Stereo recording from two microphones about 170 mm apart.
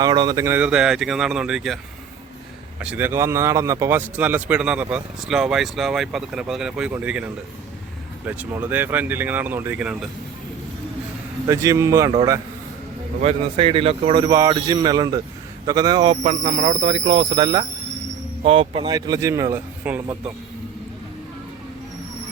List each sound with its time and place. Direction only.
0.0 s speech: 25° right (ahead or behind); by 10.1 s 5° right (ahead or behind)
11.4 s speech: 15° right (ahead or behind)
13.2 s speech: 30° right (ahead or behind)
14.3 s speech: 20° right (ahead or behind)
16.2 s speech: 40° right (ahead or behind); by 20.0 s 10° right (ahead or behind)